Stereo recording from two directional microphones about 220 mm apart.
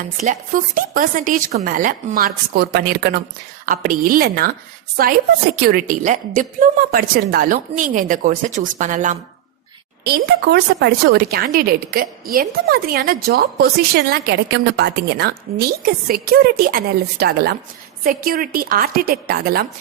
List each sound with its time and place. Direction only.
0.2 s a woman's voice: 35° right (ahead or behind)
5.6 s a woman's voice: 40° right (ahead or behind)
10.0 s a woman's voice: 45° right (ahead or behind)